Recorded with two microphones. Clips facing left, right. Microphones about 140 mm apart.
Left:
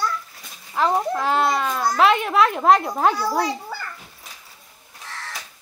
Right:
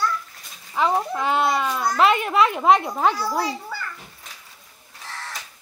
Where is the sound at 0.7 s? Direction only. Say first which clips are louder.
Left 1 dB; centre (ahead or behind).